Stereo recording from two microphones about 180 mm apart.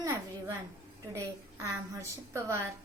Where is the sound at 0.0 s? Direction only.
15° right (ahead or behind).